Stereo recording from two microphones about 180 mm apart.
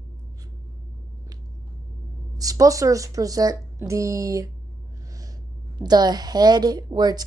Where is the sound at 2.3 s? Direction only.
20° right (ahead or behind).